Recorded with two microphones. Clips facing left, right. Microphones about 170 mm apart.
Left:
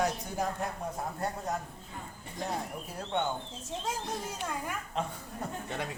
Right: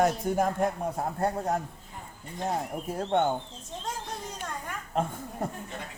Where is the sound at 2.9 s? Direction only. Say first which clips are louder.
Right 7 dB; 50° right (ahead or behind).